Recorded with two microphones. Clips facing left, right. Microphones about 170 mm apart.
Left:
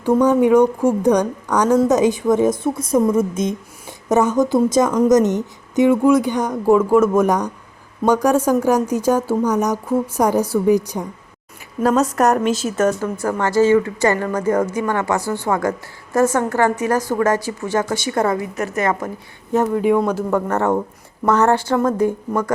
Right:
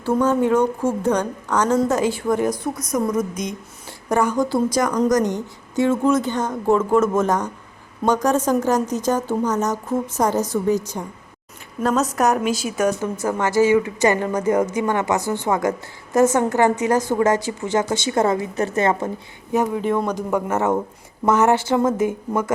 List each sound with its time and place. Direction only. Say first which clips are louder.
0.0 s a woman's voice: left 4 dB; 15° left (ahead or behind)
12.1 s a woman's voice: left 3 dB; 5° right (ahead or behind); by 19.1 s 25° right (ahead or behind)
20.0 s a man's voice: left 3 dB; 5° left (ahead or behind)
20.5 s speech: left 2 dB; 20° right (ahead or behind)